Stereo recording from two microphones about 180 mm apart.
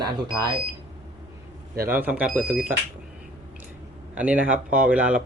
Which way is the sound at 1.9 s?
10° right (ahead or behind).